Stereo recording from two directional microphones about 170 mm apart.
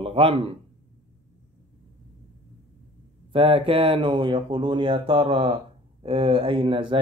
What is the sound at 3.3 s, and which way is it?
Speech, 30° right (ahead or behind).